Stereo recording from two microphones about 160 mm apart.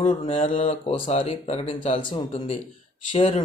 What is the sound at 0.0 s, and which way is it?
A man's voice, 40° left (ahead or behind).